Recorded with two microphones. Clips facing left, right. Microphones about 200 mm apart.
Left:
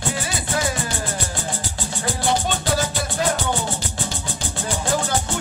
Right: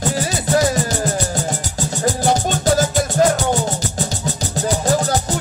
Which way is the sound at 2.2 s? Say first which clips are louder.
Right 3 dB; 40° right (ahead or behind).